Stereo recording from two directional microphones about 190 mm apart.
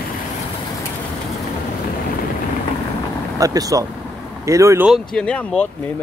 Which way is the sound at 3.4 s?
20° right (ahead or behind).